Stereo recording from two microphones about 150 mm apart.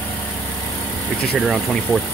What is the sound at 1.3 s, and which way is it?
Speech, centre (ahead or behind).